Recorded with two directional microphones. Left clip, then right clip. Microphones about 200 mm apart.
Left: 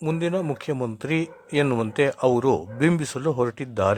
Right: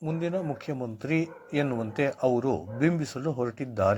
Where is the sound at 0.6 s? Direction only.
30° left (ahead or behind).